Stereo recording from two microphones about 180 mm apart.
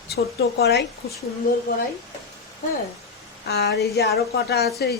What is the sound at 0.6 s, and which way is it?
Speech, 65° left (ahead or behind).